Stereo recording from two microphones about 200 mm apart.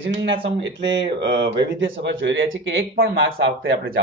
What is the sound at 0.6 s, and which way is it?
Speech, 60° right (ahead or behind).